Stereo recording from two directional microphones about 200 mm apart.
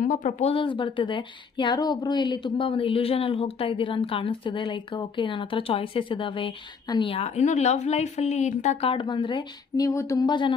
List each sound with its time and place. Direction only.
0.0 s a woman's voice: 40° left (ahead or behind); by 10.5 s 20° left (ahead or behind)